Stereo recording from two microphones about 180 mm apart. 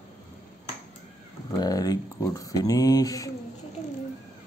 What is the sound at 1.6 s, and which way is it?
Speech, 20° left (ahead or behind).